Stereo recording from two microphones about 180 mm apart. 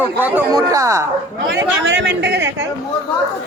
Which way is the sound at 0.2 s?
10° right (ahead or behind).